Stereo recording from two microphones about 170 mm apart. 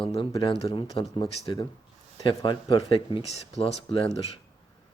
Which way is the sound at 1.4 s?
20° left (ahead or behind).